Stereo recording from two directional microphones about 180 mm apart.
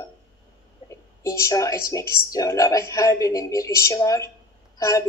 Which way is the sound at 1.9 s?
15° left (ahead or behind).